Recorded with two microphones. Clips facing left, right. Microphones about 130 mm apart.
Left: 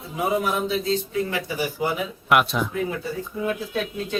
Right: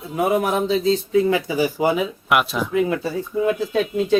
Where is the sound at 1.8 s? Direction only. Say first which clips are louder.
Right 6 dB; 90° right.